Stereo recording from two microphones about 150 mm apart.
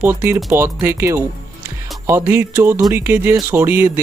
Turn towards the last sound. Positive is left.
turn(degrees=-15)  # may be behind; listen again after turning